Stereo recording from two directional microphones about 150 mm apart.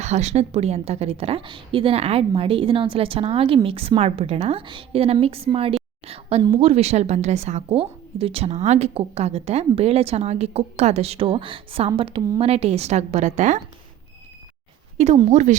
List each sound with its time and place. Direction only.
0.0 s a woman's voice: 50° right (ahead or behind)
14.9 s a woman's voice: 45° right (ahead or behind)